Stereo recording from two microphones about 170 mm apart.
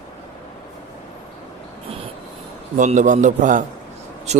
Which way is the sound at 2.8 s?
45° right (ahead or behind).